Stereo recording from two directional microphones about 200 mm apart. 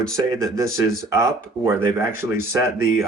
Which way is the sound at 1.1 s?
15° right (ahead or behind).